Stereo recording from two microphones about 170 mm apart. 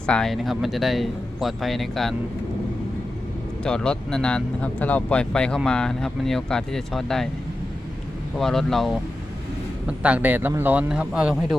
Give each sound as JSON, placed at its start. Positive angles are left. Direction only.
{"t": 0.0, "sound": "speech", "side_deg": 5}
{"t": 3.6, "sound": "speech", "side_deg": 5}
{"t": 8.4, "sound": "a man's voice", "side_deg": 0}